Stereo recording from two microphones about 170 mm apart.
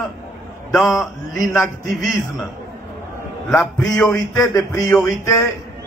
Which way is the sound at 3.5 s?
15° left (ahead or behind).